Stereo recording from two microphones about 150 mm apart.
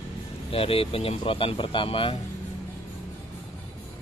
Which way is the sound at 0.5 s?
40° left (ahead or behind).